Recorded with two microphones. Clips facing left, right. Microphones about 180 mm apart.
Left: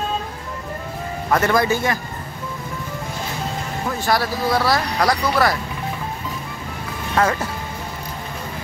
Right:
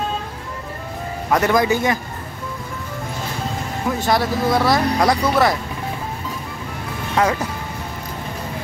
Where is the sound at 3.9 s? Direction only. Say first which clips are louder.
Right 2 dB; 20° right (ahead or behind).